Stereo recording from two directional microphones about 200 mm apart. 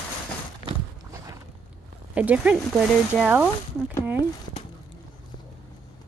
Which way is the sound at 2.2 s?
5° right (ahead or behind).